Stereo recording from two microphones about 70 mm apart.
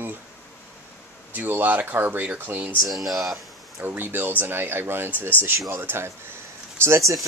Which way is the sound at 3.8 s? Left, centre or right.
Right.